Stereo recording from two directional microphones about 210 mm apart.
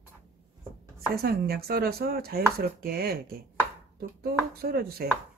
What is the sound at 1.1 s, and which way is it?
Speech, 45° right (ahead or behind).